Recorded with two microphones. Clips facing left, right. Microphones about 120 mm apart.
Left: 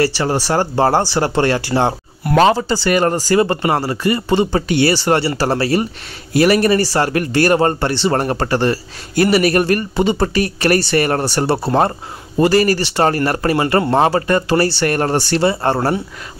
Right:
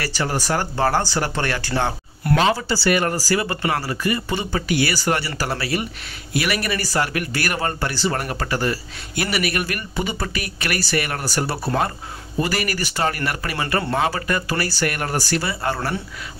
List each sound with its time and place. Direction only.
0.0 s speech: 30° left (ahead or behind)
2.3 s speech: 45° left (ahead or behind)
2.9 s speech: 35° left (ahead or behind)